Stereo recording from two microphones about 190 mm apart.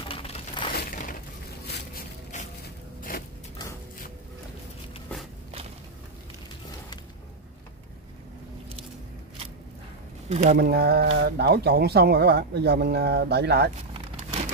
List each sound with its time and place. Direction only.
0.1 s crushing: 30° left (ahead or behind)
0.7 s crushing: 45° left (ahead or behind)
2.3 s a sound: 40° left (ahead or behind)
10.3 s speech: 35° right (ahead or behind)
10.6 s speech: 55° right (ahead or behind)